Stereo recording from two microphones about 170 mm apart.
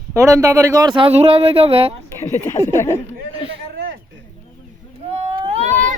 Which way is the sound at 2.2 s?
15° left (ahead or behind).